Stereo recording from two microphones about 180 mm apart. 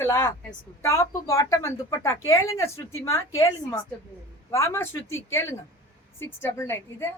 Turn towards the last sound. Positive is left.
turn(degrees=15)  # may be behind; listen again after turning